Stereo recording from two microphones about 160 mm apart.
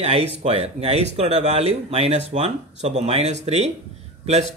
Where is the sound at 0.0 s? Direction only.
40° right (ahead or behind).